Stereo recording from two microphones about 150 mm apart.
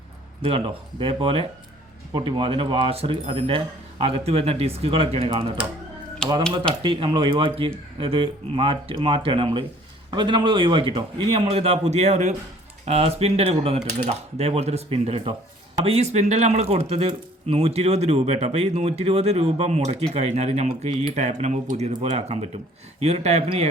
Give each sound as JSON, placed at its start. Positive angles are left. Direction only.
{"t": 0.4, "sound": "a man's voice", "side_deg": -40}
{"t": 6.2, "sound": "speech", "side_deg": 5}
{"t": 6.8, "sound": "a man's voice", "side_deg": -35}